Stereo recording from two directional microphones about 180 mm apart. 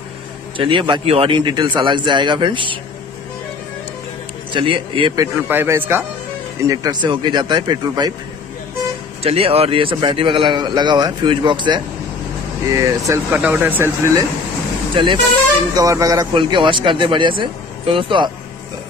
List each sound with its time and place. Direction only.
0.6 s speech: 25° right (ahead or behind)
4.5 s speech: 25° right (ahead or behind)
9.2 s speech: 35° right (ahead or behind); by 14.2 s 15° right (ahead or behind)
15.0 s speech: 30° right (ahead or behind)
15.7 s speech: 20° right (ahead or behind)